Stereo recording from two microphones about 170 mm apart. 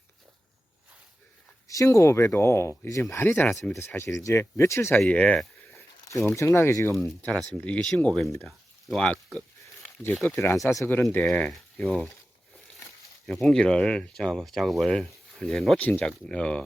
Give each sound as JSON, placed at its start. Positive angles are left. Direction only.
{"t": 1.6, "sound": "speech", "side_deg": 20}
{"t": 5.7, "sound": "speech", "side_deg": 15}
{"t": 8.4, "sound": "a sound", "side_deg": 5}
{"t": 10.2, "sound": "speech", "side_deg": 10}
{"t": 13.2, "sound": "speech", "side_deg": 0}